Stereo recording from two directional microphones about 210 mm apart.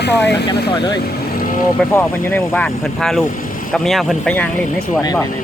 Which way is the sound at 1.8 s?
10° left (ahead or behind).